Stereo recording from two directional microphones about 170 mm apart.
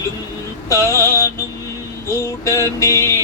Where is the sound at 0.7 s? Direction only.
15° left (ahead or behind).